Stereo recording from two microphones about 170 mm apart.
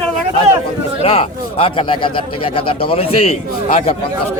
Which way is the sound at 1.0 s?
35° left (ahead or behind).